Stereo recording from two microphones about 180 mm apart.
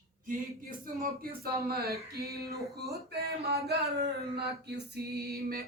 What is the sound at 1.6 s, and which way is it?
Male singing, 60° right (ahead or behind).